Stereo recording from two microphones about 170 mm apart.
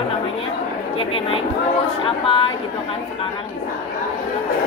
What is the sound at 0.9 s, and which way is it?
A woman's voice, 35° left (ahead or behind).